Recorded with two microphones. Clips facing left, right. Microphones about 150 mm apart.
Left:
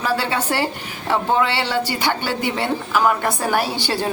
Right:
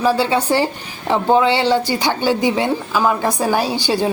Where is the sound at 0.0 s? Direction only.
15° right (ahead or behind).